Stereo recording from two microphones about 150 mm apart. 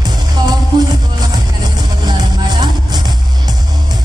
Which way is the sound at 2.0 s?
30° right (ahead or behind).